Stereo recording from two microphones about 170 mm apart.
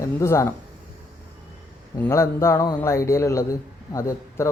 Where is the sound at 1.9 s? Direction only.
15° left (ahead or behind).